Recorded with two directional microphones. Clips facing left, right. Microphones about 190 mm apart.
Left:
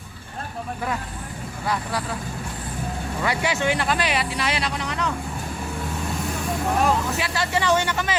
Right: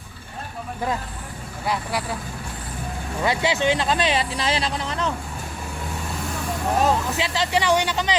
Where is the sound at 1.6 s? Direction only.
15° right (ahead or behind).